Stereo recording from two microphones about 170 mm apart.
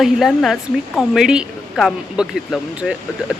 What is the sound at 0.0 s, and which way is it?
A woman's voice, centre (ahead or behind).